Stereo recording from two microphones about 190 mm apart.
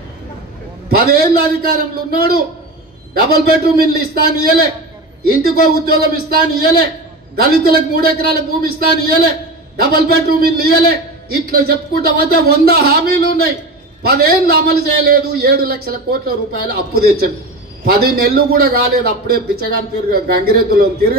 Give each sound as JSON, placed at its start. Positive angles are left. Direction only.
{"t": 0.8, "sound": "a man's voice", "side_deg": -55}
{"t": 5.9, "sound": "a man's voice", "side_deg": -55}